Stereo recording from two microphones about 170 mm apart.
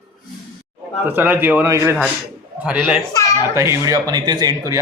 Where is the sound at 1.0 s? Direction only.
10° right (ahead or behind).